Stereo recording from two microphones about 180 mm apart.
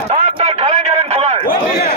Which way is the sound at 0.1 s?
35° right (ahead or behind).